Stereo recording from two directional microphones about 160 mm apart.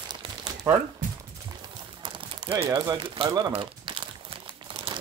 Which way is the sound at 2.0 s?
30° right (ahead or behind).